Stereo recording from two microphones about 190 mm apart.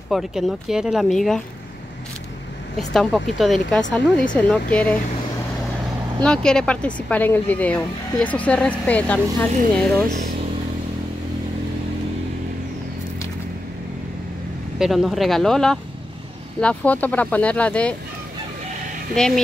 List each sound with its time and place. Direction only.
0.1 s speech: centre (ahead or behind)
2.9 s speech: centre (ahead or behind)
6.2 s speech: 5° left (ahead or behind)
14.8 s speech: centre (ahead or behind)
19.1 s speech: 5° left (ahead or behind)